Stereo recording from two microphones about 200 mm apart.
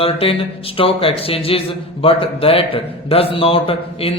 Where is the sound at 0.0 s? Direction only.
30° left (ahead or behind).